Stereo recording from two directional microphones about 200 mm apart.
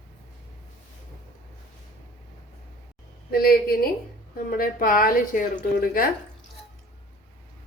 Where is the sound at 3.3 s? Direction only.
50° left (ahead or behind).